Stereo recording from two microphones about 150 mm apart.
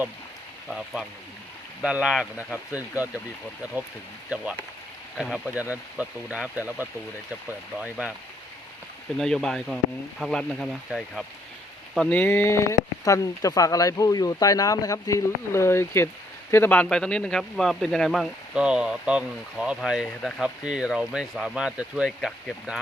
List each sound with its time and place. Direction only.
0.7 s speech: 5° right (ahead or behind)
5.1 s speech: centre (ahead or behind)
9.1 s speech: 5° left (ahead or behind)